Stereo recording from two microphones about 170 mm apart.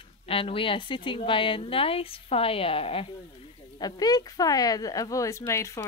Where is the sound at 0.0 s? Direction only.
35° left (ahead or behind).